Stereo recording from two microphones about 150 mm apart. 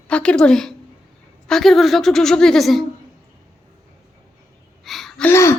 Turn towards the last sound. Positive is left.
turn(degrees=20)  # may be behind; listen again after turning